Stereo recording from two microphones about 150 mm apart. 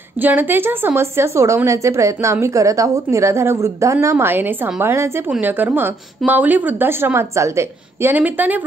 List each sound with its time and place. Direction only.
0.2 s a woman's voice: 10° right (ahead or behind)